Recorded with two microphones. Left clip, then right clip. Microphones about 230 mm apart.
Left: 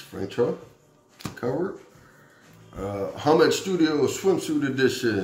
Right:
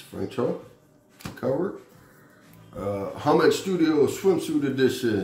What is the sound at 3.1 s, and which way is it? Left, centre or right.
Speech, centre.